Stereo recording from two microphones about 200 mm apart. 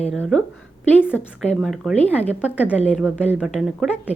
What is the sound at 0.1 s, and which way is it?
Speech, centre (ahead or behind).